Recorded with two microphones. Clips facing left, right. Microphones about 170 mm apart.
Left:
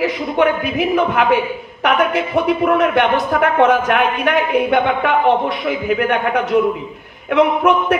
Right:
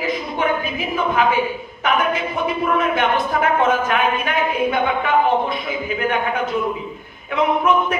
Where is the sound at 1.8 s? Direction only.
70° left (ahead or behind).